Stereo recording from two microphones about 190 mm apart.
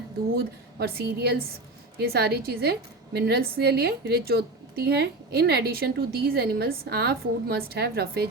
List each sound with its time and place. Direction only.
0.3 s a woman's voice: 55° right (ahead or behind)